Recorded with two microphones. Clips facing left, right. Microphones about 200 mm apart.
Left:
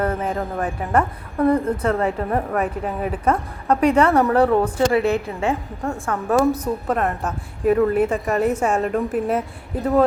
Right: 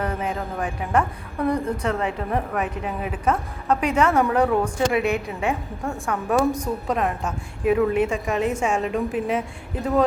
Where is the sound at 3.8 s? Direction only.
10° right (ahead or behind).